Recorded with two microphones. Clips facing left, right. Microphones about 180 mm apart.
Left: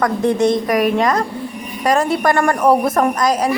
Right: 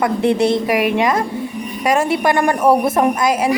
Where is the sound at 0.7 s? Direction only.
5° right (ahead or behind).